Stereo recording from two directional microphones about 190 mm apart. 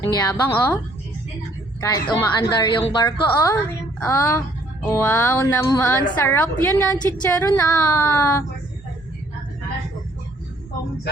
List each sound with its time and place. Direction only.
0.0 s speech: 10° left (ahead or behind)
1.8 s a woman's voice: 20° left (ahead or behind)